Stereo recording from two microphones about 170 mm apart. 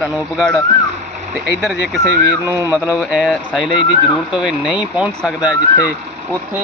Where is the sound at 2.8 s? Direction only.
5° right (ahead or behind).